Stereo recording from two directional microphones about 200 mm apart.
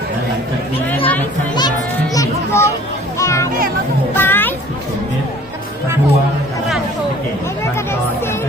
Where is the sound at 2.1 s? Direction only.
15° left (ahead or behind).